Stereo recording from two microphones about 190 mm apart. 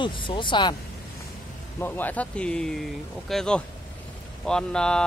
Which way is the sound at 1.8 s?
10° left (ahead or behind).